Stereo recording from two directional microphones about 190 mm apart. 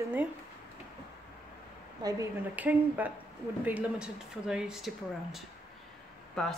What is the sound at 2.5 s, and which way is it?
Speech, 10° right (ahead or behind).